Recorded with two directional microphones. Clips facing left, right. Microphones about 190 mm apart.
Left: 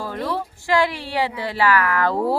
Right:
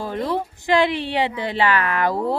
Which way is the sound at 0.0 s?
20° right (ahead or behind).